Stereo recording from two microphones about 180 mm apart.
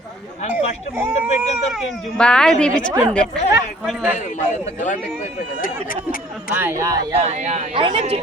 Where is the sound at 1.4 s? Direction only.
Centre (ahead or behind).